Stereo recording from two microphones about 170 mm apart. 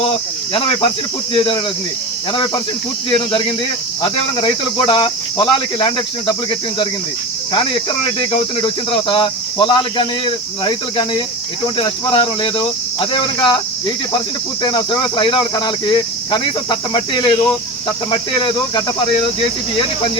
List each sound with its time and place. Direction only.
0.5 s speech: 30° left (ahead or behind)
3.1 s speech: 30° left (ahead or behind)
7.5 s speech: 30° left (ahead or behind)